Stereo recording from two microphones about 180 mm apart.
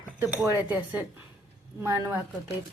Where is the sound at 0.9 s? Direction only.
10° right (ahead or behind).